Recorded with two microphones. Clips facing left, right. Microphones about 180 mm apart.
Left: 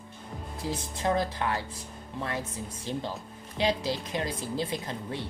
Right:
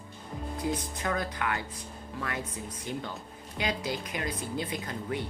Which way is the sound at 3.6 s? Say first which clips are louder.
Left 4 dB; 30° left (ahead or behind).